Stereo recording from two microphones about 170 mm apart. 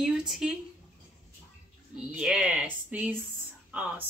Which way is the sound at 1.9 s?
5° right (ahead or behind).